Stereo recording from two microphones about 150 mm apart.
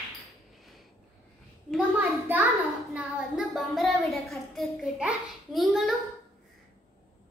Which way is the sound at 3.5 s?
Centre (ahead or behind).